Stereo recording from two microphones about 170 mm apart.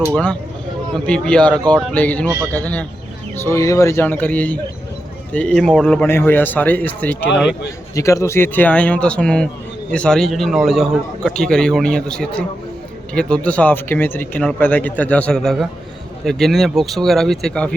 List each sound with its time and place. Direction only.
0.9 s speech: 5° left (ahead or behind)
7.3 s speech: 90° left
7.9 s a man's voice: 20° left (ahead or behind)